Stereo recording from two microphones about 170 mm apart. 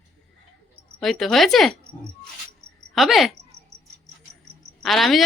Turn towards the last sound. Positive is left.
turn(degrees=0)  # may be behind; listen again after turning